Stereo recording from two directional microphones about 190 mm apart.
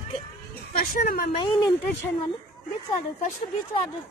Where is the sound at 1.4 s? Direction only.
25° left (ahead or behind).